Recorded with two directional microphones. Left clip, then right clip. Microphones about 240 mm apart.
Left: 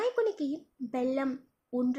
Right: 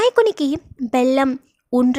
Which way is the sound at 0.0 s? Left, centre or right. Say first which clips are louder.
Right 14 dB; right.